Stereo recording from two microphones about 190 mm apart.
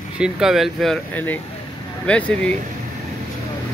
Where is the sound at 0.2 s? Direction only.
5° right (ahead or behind).